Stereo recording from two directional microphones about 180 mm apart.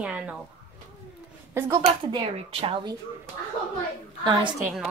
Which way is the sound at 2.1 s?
30° right (ahead or behind).